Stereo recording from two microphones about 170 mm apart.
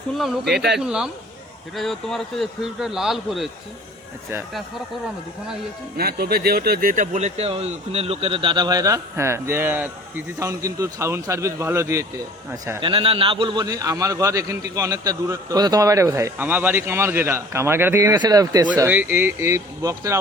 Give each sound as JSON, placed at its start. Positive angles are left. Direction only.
{"t": 0.1, "sound": "a man's voice", "side_deg": 0}
{"t": 0.5, "sound": "speech", "side_deg": -75}
{"t": 0.8, "sound": "a man's voice", "side_deg": -5}
{"t": 6.0, "sound": "speech", "side_deg": -65}
{"t": 12.8, "sound": "speech", "side_deg": -30}
{"t": 18.8, "sound": "speech", "side_deg": -10}